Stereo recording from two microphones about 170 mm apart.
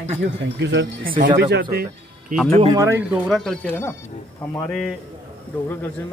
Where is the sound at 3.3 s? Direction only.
5° left (ahead or behind).